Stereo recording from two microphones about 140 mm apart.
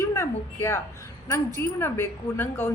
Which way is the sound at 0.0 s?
20° left (ahead or behind).